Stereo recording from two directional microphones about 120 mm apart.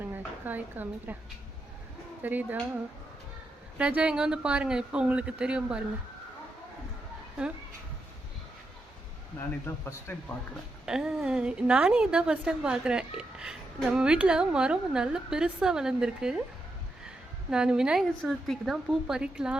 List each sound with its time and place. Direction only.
0.4 s a woman's voice: 15° right (ahead or behind)
2.2 s a woman's voice: 15° right (ahead or behind)
3.8 s a woman's voice: 10° right (ahead or behind)
9.6 s speech: 15° left (ahead or behind)
10.8 s a woman's voice: 5° right (ahead or behind)
17.5 s a woman's voice: 5° right (ahead or behind)